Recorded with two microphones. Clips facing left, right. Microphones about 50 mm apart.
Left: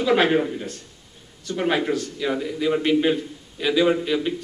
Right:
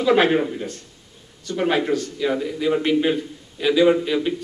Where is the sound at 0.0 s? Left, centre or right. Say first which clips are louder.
Right 2 dB; centre.